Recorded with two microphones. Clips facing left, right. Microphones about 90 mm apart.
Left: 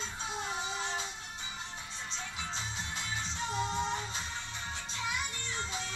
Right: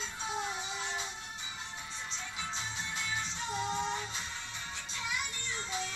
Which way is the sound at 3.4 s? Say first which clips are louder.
Left 1 dB; 10° right (ahead or behind).